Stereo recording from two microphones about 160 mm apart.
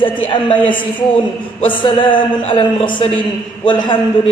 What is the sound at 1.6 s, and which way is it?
A man's voice, 30° left (ahead or behind).